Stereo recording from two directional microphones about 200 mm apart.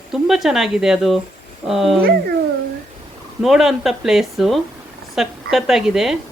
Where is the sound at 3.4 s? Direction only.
Centre (ahead or behind).